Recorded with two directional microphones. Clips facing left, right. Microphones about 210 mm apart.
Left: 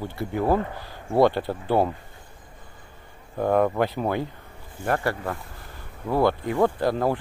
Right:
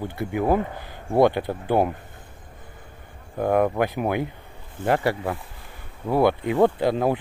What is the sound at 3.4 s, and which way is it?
Speech, 10° right (ahead or behind).